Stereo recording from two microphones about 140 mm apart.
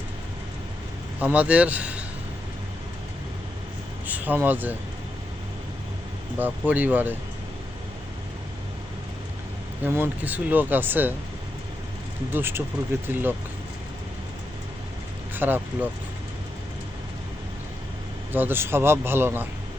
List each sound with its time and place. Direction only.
1.2 s speech: 10° right (ahead or behind)
4.0 s speech: 10° right (ahead or behind)
6.4 s speech: 10° right (ahead or behind)
9.8 s speech: 15° right (ahead or behind)
12.3 s speech: 15° right (ahead or behind)
15.4 s speech: 15° right (ahead or behind)
18.3 s speech: 15° right (ahead or behind)